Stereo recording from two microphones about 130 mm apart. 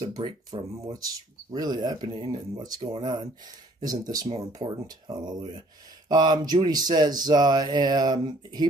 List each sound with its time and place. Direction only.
0.0 s speech: 30° right (ahead or behind)